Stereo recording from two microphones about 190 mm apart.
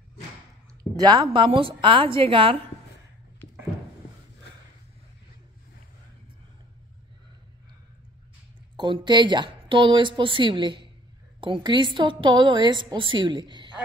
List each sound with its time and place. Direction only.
0.9 s a woman's voice: 20° right (ahead or behind)
8.7 s a woman's voice: 25° right (ahead or behind)